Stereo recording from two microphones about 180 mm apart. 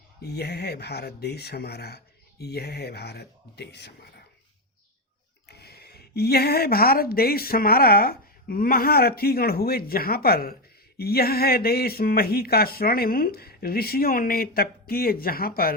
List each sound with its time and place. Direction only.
0.2 s speech: 65° left (ahead or behind)
5.5 s speech: 65° left (ahead or behind)